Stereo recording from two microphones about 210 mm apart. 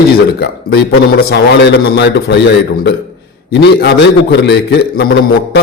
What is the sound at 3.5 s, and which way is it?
A man's voice, 50° left (ahead or behind).